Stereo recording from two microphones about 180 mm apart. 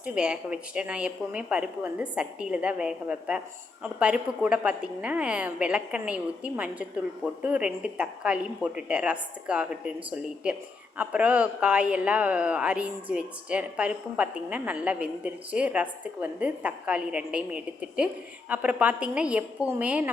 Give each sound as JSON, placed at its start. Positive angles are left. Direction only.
{"t": 0.0, "sound": "a woman's voice", "side_deg": -5}